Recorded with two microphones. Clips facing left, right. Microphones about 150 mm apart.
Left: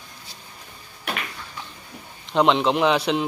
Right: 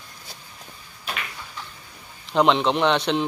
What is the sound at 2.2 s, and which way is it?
A man's voice, centre (ahead or behind).